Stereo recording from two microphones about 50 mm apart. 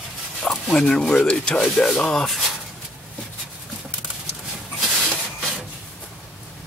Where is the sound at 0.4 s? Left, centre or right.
Centre.